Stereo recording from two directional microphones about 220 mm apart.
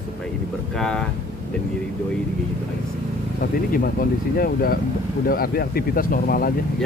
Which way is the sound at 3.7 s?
40° left (ahead or behind).